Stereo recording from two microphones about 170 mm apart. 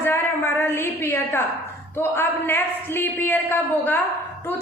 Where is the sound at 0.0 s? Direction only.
15° left (ahead or behind).